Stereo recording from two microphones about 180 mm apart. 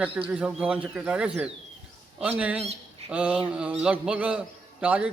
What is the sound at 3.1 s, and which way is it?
A man's voice, 5° right (ahead or behind).